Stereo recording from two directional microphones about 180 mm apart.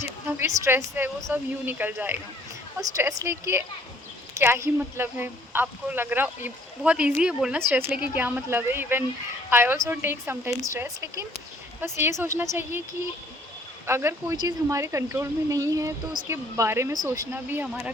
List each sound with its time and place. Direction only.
0.3 s a woman's voice: 15° right (ahead or behind)
13.8 s a woman's voice: 15° right (ahead or behind)